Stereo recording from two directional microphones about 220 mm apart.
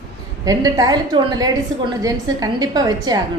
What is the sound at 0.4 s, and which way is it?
A woman's voice, 15° right (ahead or behind).